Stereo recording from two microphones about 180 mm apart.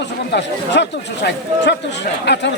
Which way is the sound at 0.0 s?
75° left (ahead or behind).